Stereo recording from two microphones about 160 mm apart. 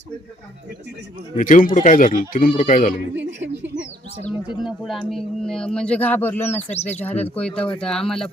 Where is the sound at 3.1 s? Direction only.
90° right.